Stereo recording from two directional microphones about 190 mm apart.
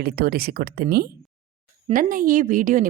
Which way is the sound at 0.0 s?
55° right (ahead or behind).